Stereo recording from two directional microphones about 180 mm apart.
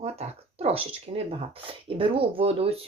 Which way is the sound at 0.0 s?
35° right (ahead or behind).